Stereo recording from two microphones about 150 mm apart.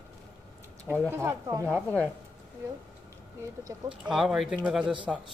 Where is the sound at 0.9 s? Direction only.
15° right (ahead or behind).